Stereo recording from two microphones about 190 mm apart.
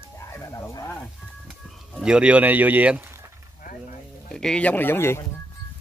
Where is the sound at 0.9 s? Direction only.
Centre (ahead or behind).